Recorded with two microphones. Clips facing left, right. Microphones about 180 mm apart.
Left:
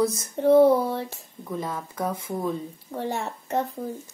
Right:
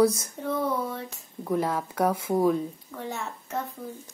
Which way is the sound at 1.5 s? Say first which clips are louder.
Right 5 dB; 80° right.